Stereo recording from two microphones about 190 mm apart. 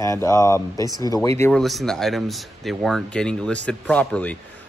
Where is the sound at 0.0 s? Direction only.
15° left (ahead or behind).